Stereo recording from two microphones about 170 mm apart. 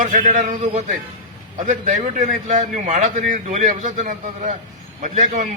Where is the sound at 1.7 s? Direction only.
45° right (ahead or behind).